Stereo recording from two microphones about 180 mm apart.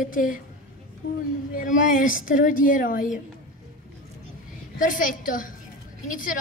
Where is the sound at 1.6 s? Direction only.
50° left (ahead or behind).